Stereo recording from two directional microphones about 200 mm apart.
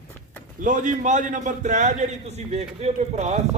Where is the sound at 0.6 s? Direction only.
40° right (ahead or behind).